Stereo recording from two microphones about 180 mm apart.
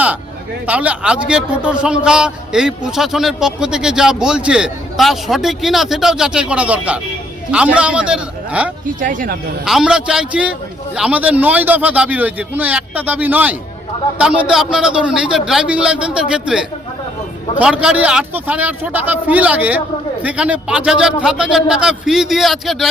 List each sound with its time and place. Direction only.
0.7 s a man's voice: 5° right (ahead or behind)
9.0 s speech: 50° right (ahead or behind)
9.6 s a man's voice: 5° right (ahead or behind)